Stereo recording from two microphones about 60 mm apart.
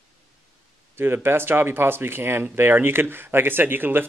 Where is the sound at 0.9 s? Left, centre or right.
Right.